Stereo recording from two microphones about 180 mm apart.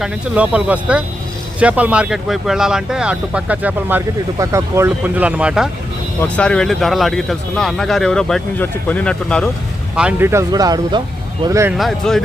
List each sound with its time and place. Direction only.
0.0 s speech: 5° right (ahead or behind)
6.2 s speech: 5° left (ahead or behind)
9.9 s speech: 5° right (ahead or behind)
11.8 s speech: centre (ahead or behind)